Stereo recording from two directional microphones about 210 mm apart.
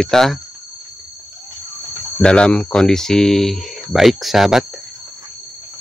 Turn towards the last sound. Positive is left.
turn(degrees=0)  # may be behind; listen again after turning